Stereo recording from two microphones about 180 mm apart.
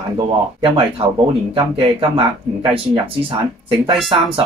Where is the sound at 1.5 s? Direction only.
25° right (ahead or behind).